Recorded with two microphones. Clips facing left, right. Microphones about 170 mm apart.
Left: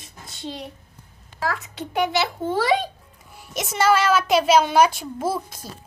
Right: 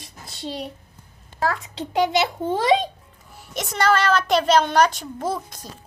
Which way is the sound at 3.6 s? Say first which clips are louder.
Left 1 dB; 5° left (ahead or behind).